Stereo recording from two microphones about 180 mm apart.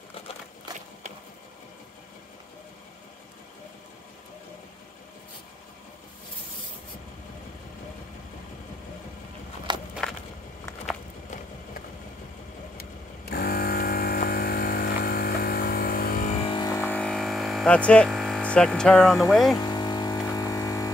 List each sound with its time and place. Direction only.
9.7 s walk: 25° right (ahead or behind)
12.7 s vehicle: 60° left (ahead or behind)
16.4 s music: 25° left (ahead or behind)
16.8 s a sound: 5° left (ahead or behind)
19.5 s a sound: 25° left (ahead or behind)
20.3 s vehicle: 20° left (ahead or behind)